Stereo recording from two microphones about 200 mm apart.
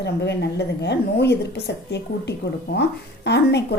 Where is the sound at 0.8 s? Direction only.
55° left (ahead or behind).